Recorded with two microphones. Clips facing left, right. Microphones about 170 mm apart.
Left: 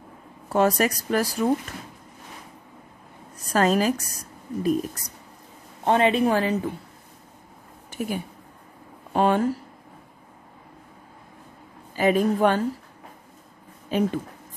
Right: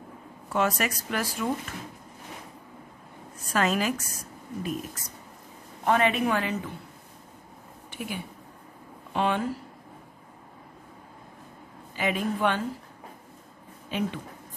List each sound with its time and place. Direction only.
0.5 s a woman's voice: 35° left (ahead or behind)
3.5 s a woman's voice: 35° left (ahead or behind)
7.9 s a sound: 40° left (ahead or behind)
9.1 s speech: 40° left (ahead or behind)
11.9 s a woman's voice: 40° left (ahead or behind)
13.8 s a woman's voice: 40° left (ahead or behind)